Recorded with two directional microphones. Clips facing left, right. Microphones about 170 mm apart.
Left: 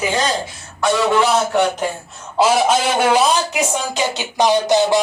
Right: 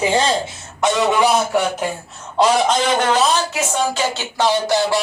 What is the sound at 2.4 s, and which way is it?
Speech, 5° left (ahead or behind).